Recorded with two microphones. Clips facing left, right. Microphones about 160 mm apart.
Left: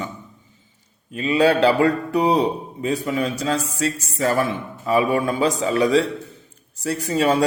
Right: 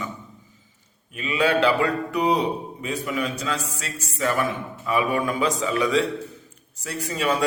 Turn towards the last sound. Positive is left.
turn(degrees=35)  # may be behind; listen again after turning